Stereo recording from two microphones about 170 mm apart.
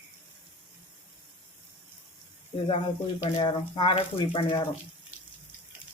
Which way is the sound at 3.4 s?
30° left (ahead or behind).